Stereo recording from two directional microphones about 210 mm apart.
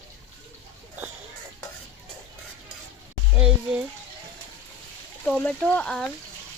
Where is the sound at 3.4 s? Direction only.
5° right (ahead or behind).